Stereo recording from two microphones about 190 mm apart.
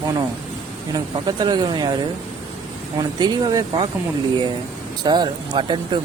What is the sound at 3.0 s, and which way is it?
Speech, 20° right (ahead or behind).